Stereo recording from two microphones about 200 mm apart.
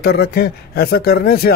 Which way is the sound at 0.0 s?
55° left (ahead or behind).